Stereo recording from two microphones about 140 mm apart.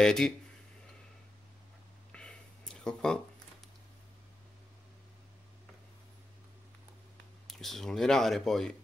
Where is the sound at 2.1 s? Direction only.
5° left (ahead or behind).